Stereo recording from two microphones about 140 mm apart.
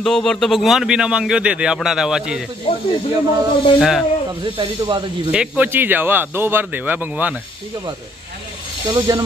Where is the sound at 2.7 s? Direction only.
40° left (ahead or behind).